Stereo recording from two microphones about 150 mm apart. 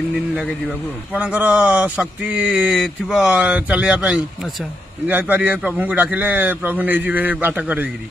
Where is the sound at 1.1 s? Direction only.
10° right (ahead or behind).